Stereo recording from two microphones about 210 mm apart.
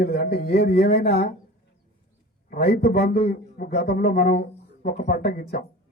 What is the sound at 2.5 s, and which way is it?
Speech, 50° left (ahead or behind).